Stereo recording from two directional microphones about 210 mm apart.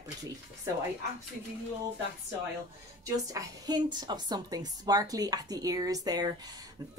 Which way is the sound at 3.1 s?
15° right (ahead or behind).